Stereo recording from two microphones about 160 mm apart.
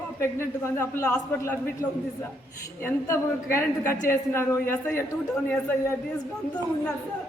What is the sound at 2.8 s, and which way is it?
Speech, 15° left (ahead or behind).